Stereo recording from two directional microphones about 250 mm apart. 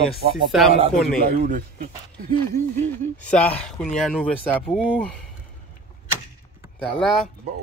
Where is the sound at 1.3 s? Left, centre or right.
Right.